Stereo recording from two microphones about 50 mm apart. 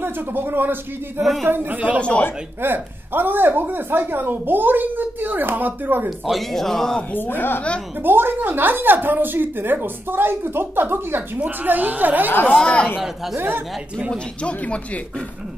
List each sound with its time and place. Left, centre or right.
0.0 s a woman's voice: right
2.0 s speech: left
2.6 s a woman's voice: right
6.0 s speech: centre
6.5 s speech: centre
7.1 s speech: left
8.0 s a woman's voice: right
11.3 s speech: right
11.7 s a woman's voice: right
12.3 s speech: left
12.6 s speech: left
14.1 s speech: left